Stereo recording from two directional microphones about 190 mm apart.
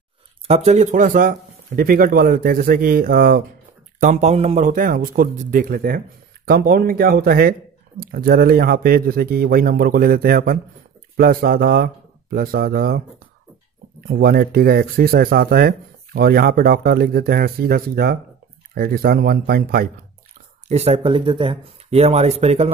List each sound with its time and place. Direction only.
0.5 s speech: 35° right (ahead or behind); by 3.4 s 50° right (ahead or behind)
4.0 s speech: 40° right (ahead or behind)
14.0 s speech: 50° right (ahead or behind)
20.6 s speech: 35° right (ahead or behind)